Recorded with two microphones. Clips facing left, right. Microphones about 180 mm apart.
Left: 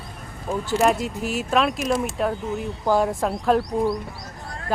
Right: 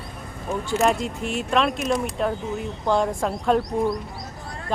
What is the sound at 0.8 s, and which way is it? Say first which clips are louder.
Speech: left 1 dB; centre (ahead or behind).